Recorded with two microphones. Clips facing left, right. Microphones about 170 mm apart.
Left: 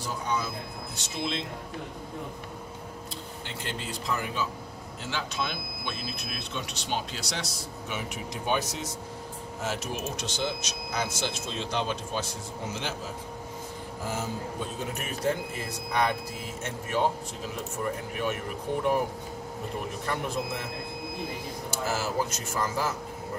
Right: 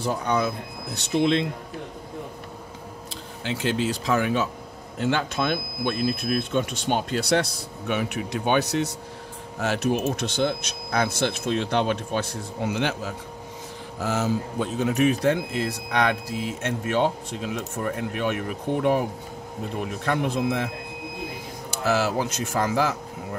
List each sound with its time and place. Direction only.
0.0 s speech: 65° right (ahead or behind)
3.4 s speech: 90° right
4.9 s speech: 55° right (ahead or behind)
14.0 s a man's voice: 80° right; by 18.9 s 65° right (ahead or behind)
20.1 s a man's voice: 65° right (ahead or behind)
21.8 s a man's voice: 75° right (ahead or behind)